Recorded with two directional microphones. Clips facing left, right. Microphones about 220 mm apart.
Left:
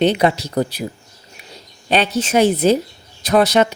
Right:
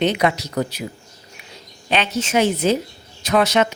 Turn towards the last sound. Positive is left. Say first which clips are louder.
# left 3 dB
turn(degrees=35)  # may be behind; listen again after turning